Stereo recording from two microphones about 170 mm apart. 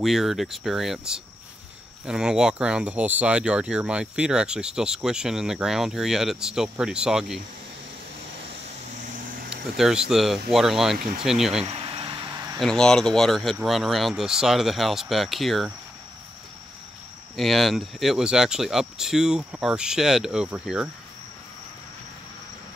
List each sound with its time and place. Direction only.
0.0 s speech: centre (ahead or behind)
9.3 s a sound: 60° right (ahead or behind)
9.8 s speech: 5° right (ahead or behind)
11.6 s a sound: 30° right (ahead or behind)
12.5 s speech: 5° left (ahead or behind)
17.4 s speech: centre (ahead or behind)